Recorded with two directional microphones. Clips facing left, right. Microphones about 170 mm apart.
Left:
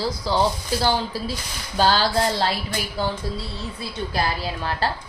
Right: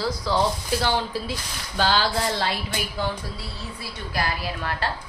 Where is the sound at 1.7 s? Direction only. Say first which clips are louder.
Left 3 dB; 40° left (ahead or behind).